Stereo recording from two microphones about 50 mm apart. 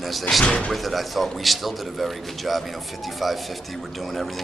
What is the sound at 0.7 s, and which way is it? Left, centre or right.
A man's voice, centre.